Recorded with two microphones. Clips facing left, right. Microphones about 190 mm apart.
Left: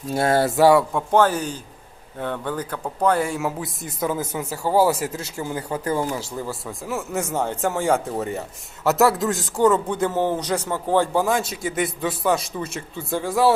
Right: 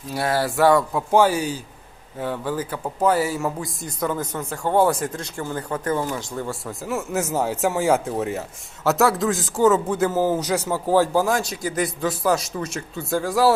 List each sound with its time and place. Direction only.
0.1 s speech: 25° left (ahead or behind)
0.9 s a man's voice: 10° right (ahead or behind)